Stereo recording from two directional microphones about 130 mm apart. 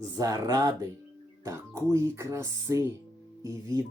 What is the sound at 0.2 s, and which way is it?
Speech, 25° right (ahead or behind).